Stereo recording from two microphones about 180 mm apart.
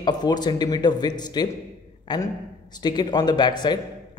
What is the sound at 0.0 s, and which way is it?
A man's voice, 25° left (ahead or behind).